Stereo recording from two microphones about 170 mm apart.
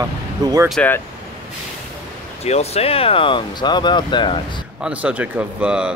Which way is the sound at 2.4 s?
40° left (ahead or behind).